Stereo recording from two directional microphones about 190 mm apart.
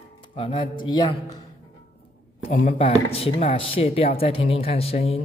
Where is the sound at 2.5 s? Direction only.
40° left (ahead or behind).